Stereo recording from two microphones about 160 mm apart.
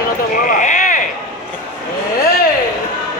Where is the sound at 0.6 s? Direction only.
55° left (ahead or behind).